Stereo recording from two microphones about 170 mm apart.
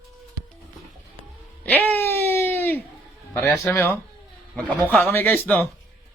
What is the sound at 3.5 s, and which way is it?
Speech, 15° left (ahead or behind).